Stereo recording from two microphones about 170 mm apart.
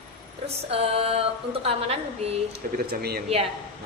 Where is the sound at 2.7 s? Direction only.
65° right (ahead or behind).